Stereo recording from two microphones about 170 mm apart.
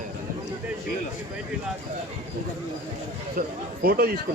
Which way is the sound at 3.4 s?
50° right (ahead or behind).